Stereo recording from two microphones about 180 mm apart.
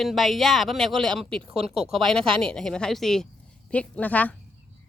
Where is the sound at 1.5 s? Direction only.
35° right (ahead or behind).